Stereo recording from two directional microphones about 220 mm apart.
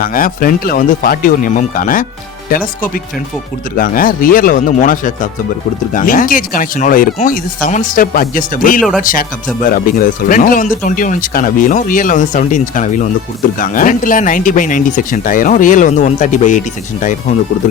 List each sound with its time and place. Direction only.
0.0 s speech: 40° left (ahead or behind)
3.8 s speech: 40° left (ahead or behind)